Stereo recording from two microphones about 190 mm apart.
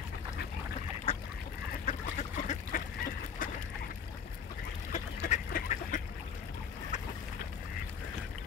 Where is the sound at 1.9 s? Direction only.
40° left (ahead or behind).